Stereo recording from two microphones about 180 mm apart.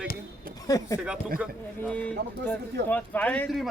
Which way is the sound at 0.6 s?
20° left (ahead or behind).